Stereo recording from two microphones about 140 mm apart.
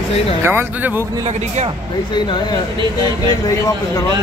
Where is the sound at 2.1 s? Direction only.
35° left (ahead or behind).